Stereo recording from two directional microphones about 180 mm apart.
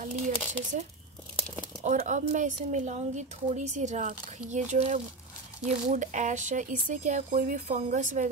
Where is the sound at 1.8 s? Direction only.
45° right (ahead or behind).